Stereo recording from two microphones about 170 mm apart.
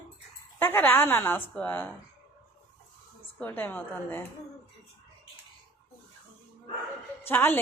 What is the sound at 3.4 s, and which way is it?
Speech, 10° left (ahead or behind).